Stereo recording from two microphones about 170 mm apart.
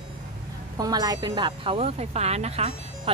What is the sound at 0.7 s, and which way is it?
Speech, 20° right (ahead or behind).